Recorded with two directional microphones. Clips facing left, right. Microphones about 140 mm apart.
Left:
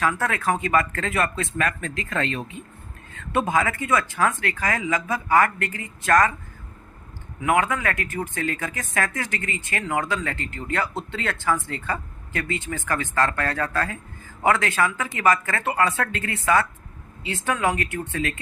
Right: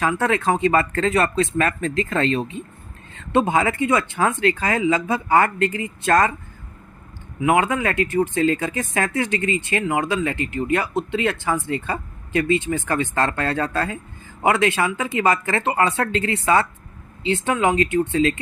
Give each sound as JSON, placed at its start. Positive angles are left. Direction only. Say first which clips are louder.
{"t": 0.0, "sound": "speech", "louder": "right 4 dB", "side_deg": -25}
{"t": 7.4, "sound": "speech", "louder": "right 3 dB", "side_deg": -25}